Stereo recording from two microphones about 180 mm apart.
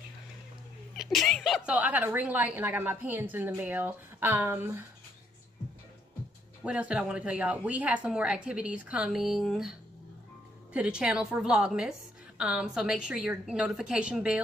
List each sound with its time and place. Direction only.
0.9 s a woman's voice: centre (ahead or behind)
6.6 s a woman's voice: 5° right (ahead or behind)